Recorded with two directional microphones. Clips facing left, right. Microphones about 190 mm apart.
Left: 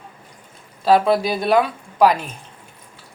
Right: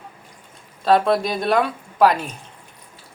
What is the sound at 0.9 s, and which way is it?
Speech, 5° left (ahead or behind).